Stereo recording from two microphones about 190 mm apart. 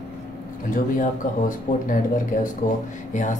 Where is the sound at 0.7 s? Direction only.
45° left (ahead or behind).